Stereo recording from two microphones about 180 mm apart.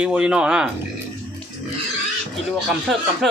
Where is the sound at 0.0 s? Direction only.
5° right (ahead or behind).